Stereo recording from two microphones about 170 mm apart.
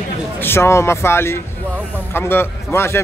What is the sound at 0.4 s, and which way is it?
Speech, 15° left (ahead or behind).